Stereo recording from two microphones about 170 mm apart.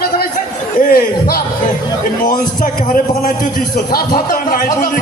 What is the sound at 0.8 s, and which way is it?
Speech, 60° left (ahead or behind).